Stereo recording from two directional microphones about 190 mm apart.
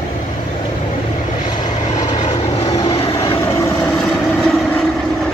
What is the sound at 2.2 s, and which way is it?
Vehicle, 30° left (ahead or behind).